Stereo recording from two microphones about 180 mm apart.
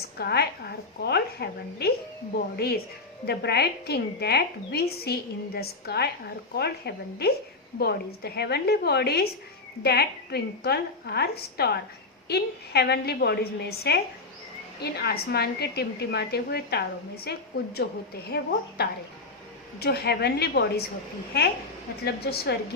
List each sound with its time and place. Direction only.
0.2 s a woman's voice: 65° left (ahead or behind)
19.8 s a woman's voice: 65° left (ahead or behind)